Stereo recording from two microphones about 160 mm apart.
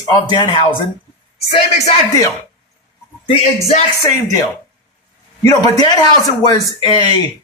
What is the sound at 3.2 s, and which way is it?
Speech, 40° left (ahead or behind).